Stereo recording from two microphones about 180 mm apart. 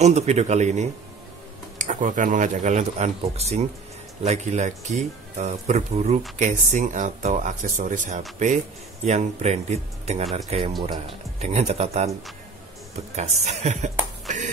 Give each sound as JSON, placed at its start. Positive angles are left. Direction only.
{"t": 0.0, "sound": "speech", "side_deg": -35}
{"t": 13.1, "sound": "speech", "side_deg": -40}
{"t": 14.2, "sound": "a sound", "side_deg": -45}